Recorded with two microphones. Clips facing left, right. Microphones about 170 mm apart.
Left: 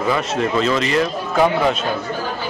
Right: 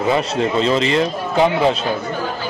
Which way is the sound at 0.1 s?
30° right (ahead or behind).